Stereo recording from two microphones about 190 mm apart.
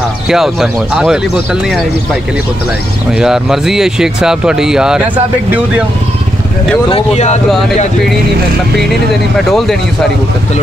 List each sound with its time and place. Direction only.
0.3 s speech: centre (ahead or behind)
3.1 s speech: 5° right (ahead or behind)
6.9 s speech: 35° left (ahead or behind)